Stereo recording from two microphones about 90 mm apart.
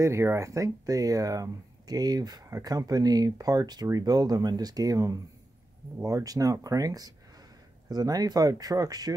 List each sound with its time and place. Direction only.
0.0 s speech: 30° right (ahead or behind)